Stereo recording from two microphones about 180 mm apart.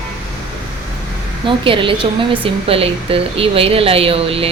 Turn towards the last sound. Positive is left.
turn(degrees=-30)  # may be behind; listen again after turning